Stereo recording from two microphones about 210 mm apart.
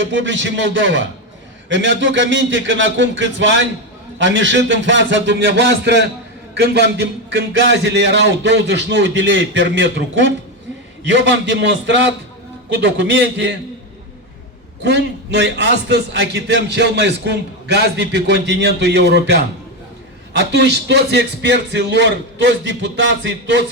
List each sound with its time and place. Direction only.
0.0 s speech: 65° right (ahead or behind)
14.8 s a man's voice: 55° right (ahead or behind)